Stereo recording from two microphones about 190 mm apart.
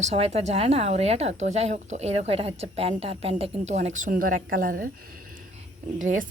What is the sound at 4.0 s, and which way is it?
Speech, 45° right (ahead or behind).